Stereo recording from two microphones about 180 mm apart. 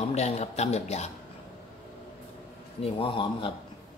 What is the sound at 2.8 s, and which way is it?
Speech, 30° left (ahead or behind).